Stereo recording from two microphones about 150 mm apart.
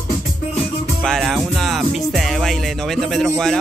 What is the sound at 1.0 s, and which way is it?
Music, centre (ahead or behind).